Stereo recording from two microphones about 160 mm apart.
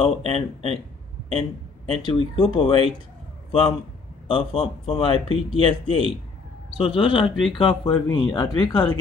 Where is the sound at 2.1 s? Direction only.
35° left (ahead or behind).